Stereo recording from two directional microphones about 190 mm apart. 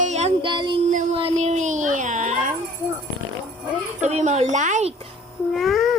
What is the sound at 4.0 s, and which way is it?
Speech, 35° right (ahead or behind).